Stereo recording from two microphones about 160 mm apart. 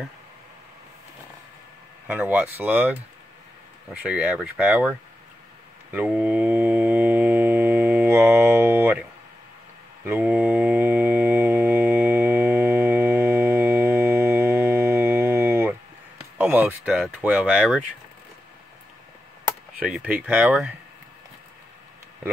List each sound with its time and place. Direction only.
2.0 s speech: 10° right (ahead or behind)
5.9 s mantra: 10° right (ahead or behind)
10.0 s mantra: 10° right (ahead or behind)
16.3 s speech: 10° right (ahead or behind)
19.9 s speech: 10° right (ahead or behind)